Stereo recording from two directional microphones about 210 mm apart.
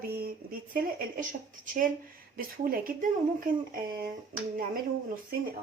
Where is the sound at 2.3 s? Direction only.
45° right (ahead or behind).